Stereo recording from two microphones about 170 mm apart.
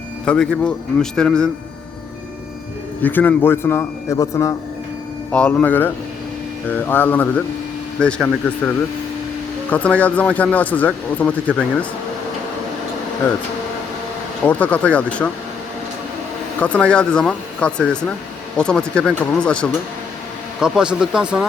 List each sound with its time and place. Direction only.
0.3 s speech: 5° left (ahead or behind)
3.0 s speech: 10° left (ahead or behind)
5.3 s speech: 5° left (ahead or behind)
9.6 s speech: 10° left (ahead or behind)
14.4 s speech: 10° left (ahead or behind)
16.6 s speech: 5° left (ahead or behind)